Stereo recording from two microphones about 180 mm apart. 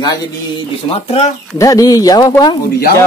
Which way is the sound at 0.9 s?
35° left (ahead or behind).